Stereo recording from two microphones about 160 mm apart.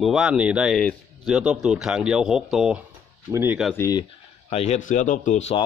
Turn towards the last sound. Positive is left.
turn(degrees=50)  # may be behind; listen again after turning